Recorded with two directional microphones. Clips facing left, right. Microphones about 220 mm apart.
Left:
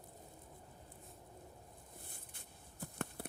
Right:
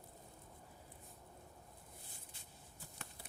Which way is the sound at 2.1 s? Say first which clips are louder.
Left 2 dB; 55° left (ahead or behind).